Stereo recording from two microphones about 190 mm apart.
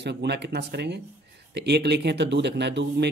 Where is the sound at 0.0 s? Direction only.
65° right (ahead or behind).